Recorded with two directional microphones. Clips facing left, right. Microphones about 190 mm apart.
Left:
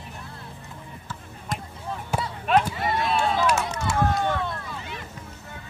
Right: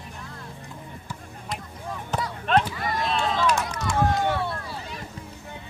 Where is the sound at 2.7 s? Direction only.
25° left (ahead or behind).